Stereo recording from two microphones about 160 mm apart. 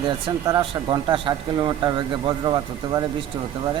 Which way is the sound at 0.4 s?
30° right (ahead or behind).